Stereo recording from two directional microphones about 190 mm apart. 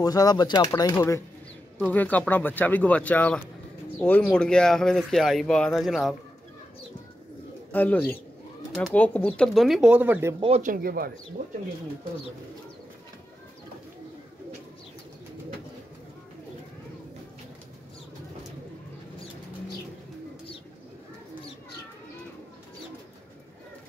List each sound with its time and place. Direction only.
0.0 s speech: 20° left (ahead or behind); by 6.1 s centre (ahead or behind)
7.7 s speech: 10° left (ahead or behind); by 10.3 s 10° right (ahead or behind)
10.4 s speech: 40° right (ahead or behind)